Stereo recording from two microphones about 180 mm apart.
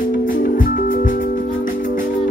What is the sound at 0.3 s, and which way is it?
Music, 50° left (ahead or behind).